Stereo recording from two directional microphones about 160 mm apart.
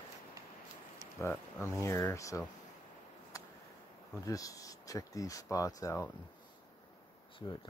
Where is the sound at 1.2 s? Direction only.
15° left (ahead or behind).